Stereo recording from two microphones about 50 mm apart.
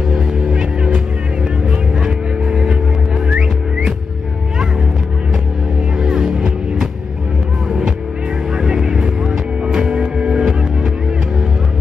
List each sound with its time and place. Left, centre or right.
0.1 s music: centre
0.5 s music: centre
5.9 s music: centre
8.5 s music: centre